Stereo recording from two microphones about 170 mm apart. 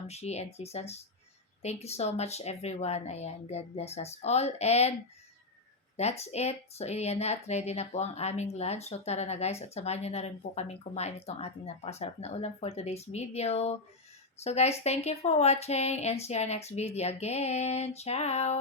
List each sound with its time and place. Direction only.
0.1 s a woman's voice: 40° left (ahead or behind)
6.0 s a woman's voice: 40° left (ahead or behind)